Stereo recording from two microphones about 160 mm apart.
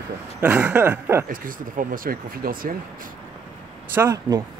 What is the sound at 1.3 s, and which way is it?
Speech, 60° right (ahead or behind).